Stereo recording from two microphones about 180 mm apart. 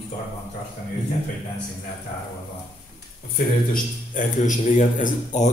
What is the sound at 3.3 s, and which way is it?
A man's voice, 50° left (ahead or behind).